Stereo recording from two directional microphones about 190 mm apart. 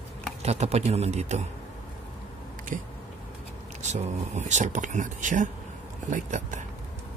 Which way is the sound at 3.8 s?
40° right (ahead or behind).